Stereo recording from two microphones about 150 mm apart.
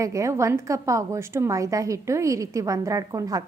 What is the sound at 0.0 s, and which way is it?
A woman's voice, 20° right (ahead or behind).